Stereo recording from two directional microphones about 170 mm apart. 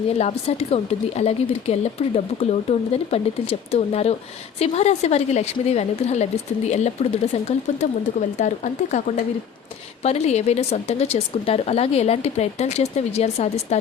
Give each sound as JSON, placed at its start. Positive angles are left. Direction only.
{"t": 0.1, "sound": "speech", "side_deg": 40}